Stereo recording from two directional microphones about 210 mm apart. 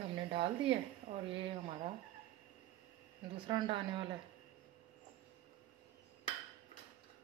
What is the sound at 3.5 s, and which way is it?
Speech, 25° right (ahead or behind).